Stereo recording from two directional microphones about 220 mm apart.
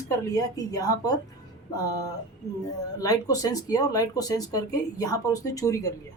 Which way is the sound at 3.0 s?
15° left (ahead or behind).